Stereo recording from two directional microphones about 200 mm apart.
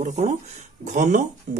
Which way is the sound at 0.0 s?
35° right (ahead or behind).